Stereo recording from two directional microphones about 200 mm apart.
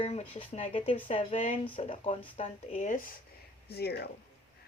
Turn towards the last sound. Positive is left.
turn(degrees=55)  # may be behind; listen again after turning